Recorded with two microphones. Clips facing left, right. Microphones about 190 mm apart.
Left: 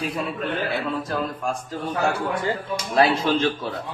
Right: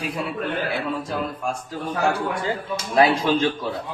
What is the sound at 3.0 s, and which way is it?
Speech, 15° right (ahead or behind).